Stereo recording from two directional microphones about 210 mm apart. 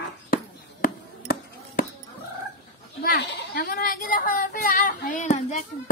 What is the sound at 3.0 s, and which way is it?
Speech, 50° left (ahead or behind).